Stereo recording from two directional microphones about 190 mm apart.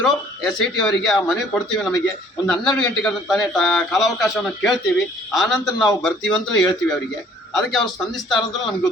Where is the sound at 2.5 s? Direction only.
5° left (ahead or behind).